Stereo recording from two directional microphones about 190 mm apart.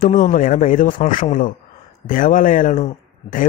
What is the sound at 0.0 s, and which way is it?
Speech, 45° left (ahead or behind).